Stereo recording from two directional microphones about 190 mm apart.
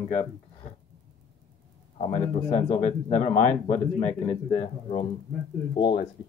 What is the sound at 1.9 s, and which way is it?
A man's voice, 30° left (ahead or behind).